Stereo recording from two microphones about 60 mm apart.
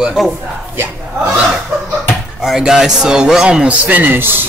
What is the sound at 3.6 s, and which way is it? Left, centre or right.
Speech, right.